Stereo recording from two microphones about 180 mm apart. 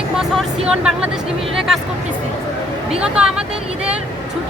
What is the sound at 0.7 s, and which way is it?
A woman's voice, 5° right (ahead or behind).